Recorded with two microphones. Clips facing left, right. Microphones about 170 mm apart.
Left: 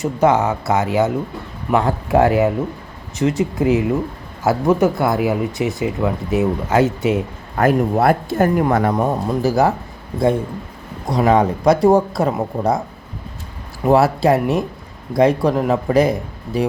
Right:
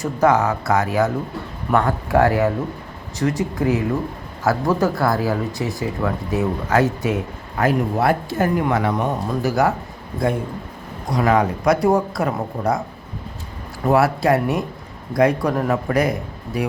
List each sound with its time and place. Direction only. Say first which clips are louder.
0.0 s speech: left 2 dB; 25° left (ahead or behind)
7.6 s speech: left 4 dB; 50° left (ahead or behind)
8.9 s speech: left 3 dB; 30° left (ahead or behind)
11.2 s speech: left 3 dB; 25° left (ahead or behind)
13.9 s speech: left 3 dB; 25° left (ahead or behind)